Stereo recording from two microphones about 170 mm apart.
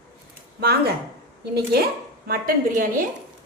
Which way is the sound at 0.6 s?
65° right (ahead or behind).